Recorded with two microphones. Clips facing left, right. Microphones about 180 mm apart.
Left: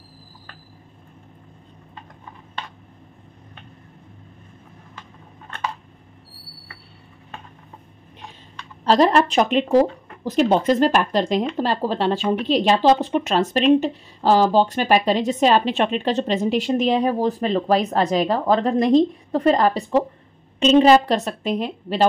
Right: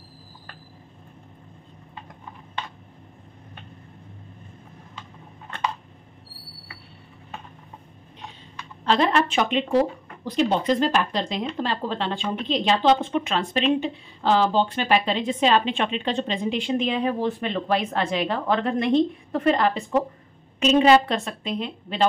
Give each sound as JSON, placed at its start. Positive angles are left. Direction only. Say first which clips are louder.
{"t": 8.8, "sound": "speech", "louder": "left 5 dB", "side_deg": 40}